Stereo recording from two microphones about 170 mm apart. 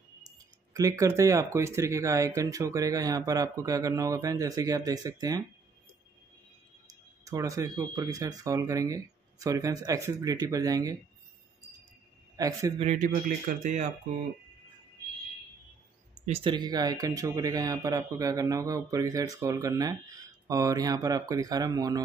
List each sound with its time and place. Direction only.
0.7 s speech: 20° right (ahead or behind)
6.9 s speech: 20° right (ahead or behind)
12.4 s speech: 20° right (ahead or behind)
12.7 s speech: 40° right (ahead or behind)
13.0 s speech: 50° right (ahead or behind)
16.3 s speech: 25° right (ahead or behind)